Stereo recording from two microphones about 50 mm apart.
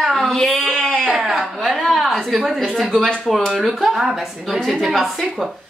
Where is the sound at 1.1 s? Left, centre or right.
Centre.